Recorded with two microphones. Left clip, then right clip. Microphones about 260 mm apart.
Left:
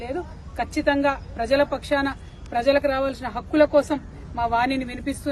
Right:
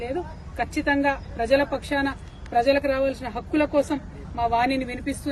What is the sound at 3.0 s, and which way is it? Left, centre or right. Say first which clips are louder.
Speech: right 1 dB; left.